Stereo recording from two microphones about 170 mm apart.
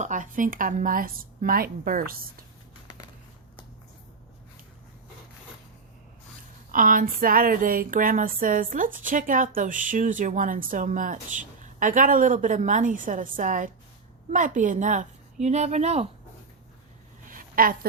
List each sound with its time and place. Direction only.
0.0 s a woman's voice: 50° right (ahead or behind)
6.7 s speech: 55° right (ahead or behind)
17.2 s a sound: 55° right (ahead or behind)